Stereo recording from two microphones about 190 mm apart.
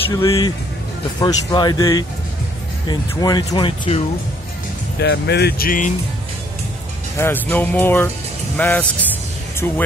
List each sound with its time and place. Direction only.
0.1 s speech: 15° left (ahead or behind)
4.9 s speech: 60° left (ahead or behind); by 5.9 s 45° left (ahead or behind)
7.2 s speech: 10° left (ahead or behind)